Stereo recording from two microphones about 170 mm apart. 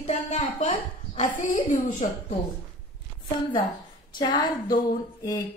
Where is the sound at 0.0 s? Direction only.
40° left (ahead or behind).